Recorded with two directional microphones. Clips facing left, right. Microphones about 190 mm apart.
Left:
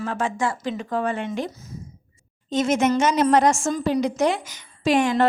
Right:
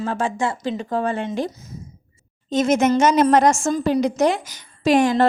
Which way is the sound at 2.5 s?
45° right (ahead or behind).